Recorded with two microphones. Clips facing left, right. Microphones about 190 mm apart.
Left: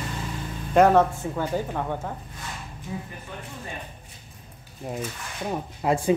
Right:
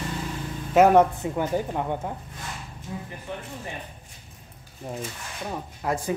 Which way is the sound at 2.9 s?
5° left (ahead or behind).